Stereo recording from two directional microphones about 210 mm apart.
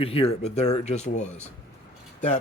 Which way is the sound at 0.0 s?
25° left (ahead or behind).